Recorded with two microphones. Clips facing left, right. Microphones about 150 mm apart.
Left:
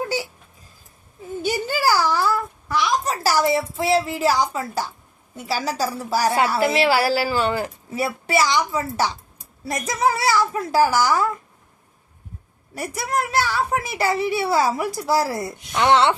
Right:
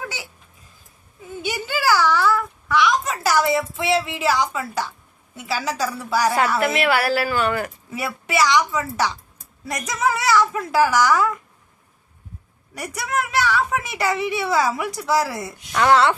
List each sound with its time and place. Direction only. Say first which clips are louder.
1.4 s a sound: left 3 dB; 40° left (ahead or behind)
5.4 s a woman's voice: left 1 dB; 40° left (ahead or behind)
12.8 s a woman's voice: left 1 dB; 30° left (ahead or behind)
15.7 s a woman's voice: right 1 dB; 25° left (ahead or behind)